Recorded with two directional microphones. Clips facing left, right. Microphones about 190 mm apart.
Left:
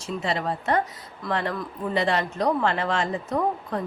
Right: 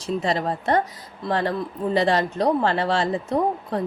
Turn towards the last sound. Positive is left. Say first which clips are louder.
# right 3 dB
turn(degrees=-30)  # may be behind; listen again after turning